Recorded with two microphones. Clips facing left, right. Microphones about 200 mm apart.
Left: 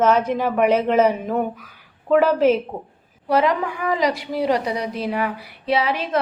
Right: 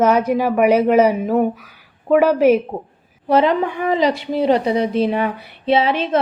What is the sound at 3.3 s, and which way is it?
A woman's voice, 25° right (ahead or behind).